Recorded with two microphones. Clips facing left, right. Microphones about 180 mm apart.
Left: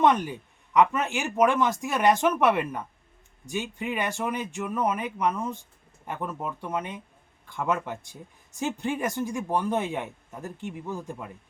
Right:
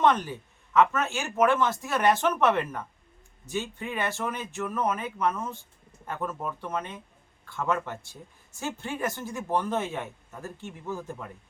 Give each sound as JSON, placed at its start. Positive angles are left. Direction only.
{"t": 0.0, "sound": "speech", "side_deg": 15}